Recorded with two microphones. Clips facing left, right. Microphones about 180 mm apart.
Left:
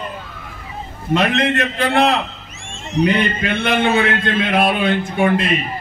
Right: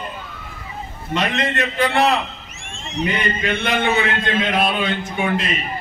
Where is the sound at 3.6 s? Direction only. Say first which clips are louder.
Left 4 dB; 55° left (ahead or behind).